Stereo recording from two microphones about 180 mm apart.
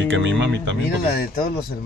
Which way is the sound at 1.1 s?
55° left (ahead or behind).